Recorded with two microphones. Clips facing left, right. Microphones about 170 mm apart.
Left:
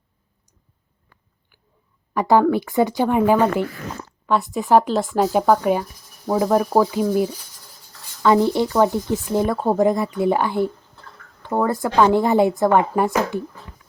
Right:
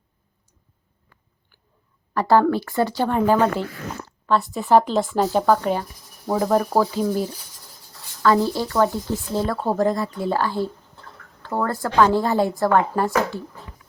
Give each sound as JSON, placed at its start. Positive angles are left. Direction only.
{"t": 2.1, "sound": "speech", "side_deg": 15}
{"t": 8.2, "sound": "speech", "side_deg": 20}